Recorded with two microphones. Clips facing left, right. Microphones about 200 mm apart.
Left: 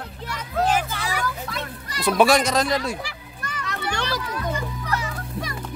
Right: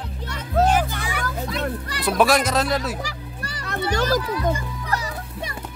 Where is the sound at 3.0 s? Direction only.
35° right (ahead or behind).